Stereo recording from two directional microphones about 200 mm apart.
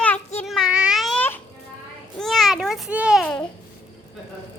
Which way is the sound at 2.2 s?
Centre (ahead or behind).